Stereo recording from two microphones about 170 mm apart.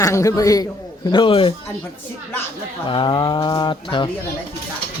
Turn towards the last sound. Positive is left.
turn(degrees=30)  # may be behind; listen again after turning